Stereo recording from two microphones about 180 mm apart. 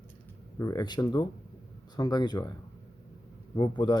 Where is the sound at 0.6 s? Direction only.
20° left (ahead or behind).